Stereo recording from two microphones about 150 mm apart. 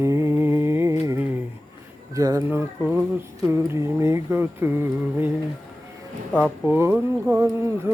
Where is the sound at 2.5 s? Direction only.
10° right (ahead or behind).